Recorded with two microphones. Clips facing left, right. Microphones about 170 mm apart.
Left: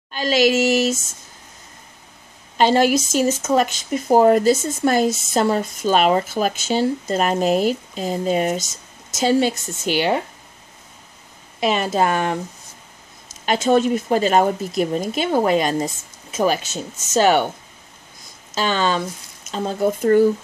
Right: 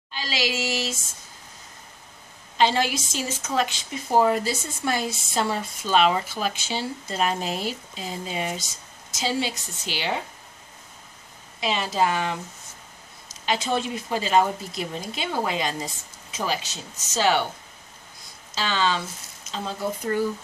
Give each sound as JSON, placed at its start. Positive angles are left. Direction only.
{"t": 0.1, "sound": "speech", "side_deg": 50}
{"t": 2.5, "sound": "speech", "side_deg": 50}
{"t": 11.6, "sound": "speech", "side_deg": 55}
{"t": 13.5, "sound": "speech", "side_deg": 45}
{"t": 18.5, "sound": "speech", "side_deg": 50}